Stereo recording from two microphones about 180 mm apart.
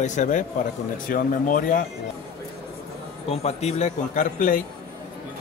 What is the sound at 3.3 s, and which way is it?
Speech, 35° left (ahead or behind).